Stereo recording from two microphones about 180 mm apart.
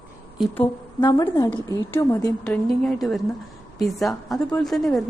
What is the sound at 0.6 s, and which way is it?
A woman's voice, 25° left (ahead or behind).